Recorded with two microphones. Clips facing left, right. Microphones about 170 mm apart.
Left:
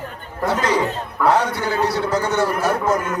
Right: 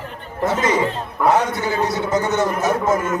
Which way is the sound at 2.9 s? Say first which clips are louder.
Right 2 dB; 5° right (ahead or behind).